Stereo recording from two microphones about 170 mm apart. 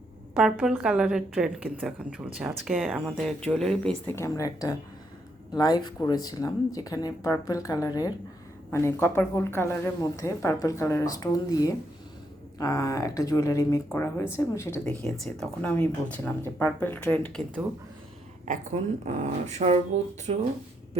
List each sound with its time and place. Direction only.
0.3 s a woman's voice: centre (ahead or behind); by 14.9 s 15° left (ahead or behind)
15.1 s a woman's voice: centre (ahead or behind)
18.4 s speech: 45° right (ahead or behind)